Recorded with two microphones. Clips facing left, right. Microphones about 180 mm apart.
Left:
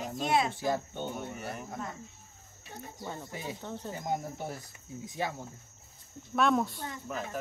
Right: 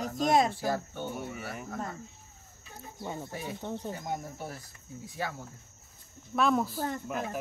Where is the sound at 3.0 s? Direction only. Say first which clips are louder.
Right 3 dB; 10° right (ahead or behind).